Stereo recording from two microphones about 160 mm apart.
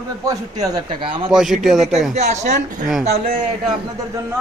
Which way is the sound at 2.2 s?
45° right (ahead or behind).